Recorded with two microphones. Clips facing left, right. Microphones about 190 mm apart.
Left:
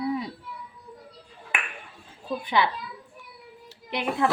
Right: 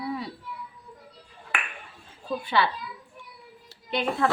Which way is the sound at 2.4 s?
15° left (ahead or behind).